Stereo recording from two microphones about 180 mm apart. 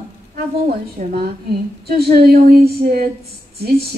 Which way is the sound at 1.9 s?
60° right (ahead or behind).